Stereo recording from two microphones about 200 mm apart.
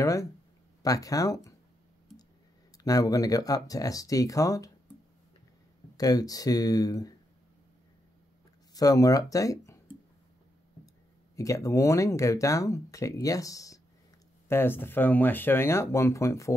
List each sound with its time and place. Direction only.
0.0 s speech: 15° left (ahead or behind)
2.8 s speech: 15° left (ahead or behind)
5.9 s speech: 20° left (ahead or behind)
8.7 s speech: 15° left (ahead or behind)
11.3 s speech: 15° left (ahead or behind)